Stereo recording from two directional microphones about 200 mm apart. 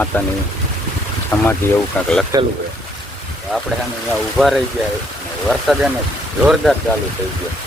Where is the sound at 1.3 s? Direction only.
10° left (ahead or behind).